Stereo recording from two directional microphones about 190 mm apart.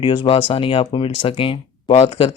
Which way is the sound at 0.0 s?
25° left (ahead or behind).